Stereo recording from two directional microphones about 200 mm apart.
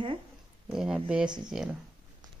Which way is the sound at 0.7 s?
5° right (ahead or behind).